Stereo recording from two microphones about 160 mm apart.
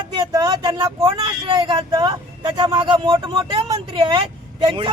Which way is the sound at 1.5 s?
30° right (ahead or behind).